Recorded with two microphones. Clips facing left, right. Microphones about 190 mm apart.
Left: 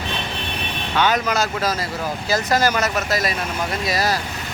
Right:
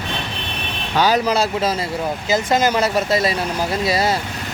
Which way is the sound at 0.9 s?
35° right (ahead or behind).